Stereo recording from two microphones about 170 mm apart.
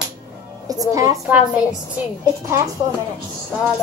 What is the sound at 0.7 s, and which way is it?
Speech, 20° right (ahead or behind).